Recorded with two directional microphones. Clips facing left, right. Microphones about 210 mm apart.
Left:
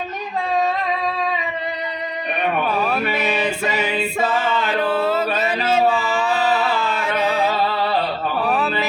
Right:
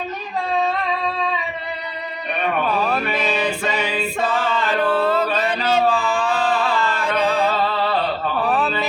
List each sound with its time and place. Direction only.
2.8 s music: 5° left (ahead or behind)
3.7 s a capella: 20° left (ahead or behind)
3.9 s chant: 5° left (ahead or behind)
5.4 s a sound: 5° left (ahead or behind)